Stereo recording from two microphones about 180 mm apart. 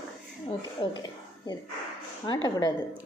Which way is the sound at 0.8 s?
25° left (ahead or behind).